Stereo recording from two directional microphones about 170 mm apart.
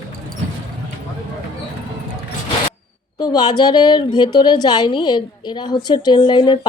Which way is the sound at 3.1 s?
25° left (ahead or behind).